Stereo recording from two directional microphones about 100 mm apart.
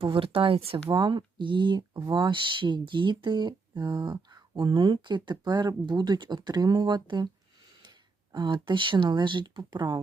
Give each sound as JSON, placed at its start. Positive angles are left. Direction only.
{"t": 0.1, "sound": "speech", "side_deg": -60}
{"t": 0.9, "sound": "speech", "side_deg": -50}